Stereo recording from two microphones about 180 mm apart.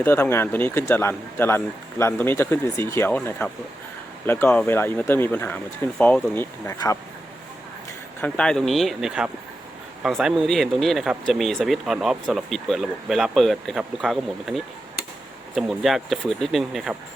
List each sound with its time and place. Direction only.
0.0 s a man's voice: 15° left (ahead or behind)
8.2 s speech: 5° left (ahead or behind)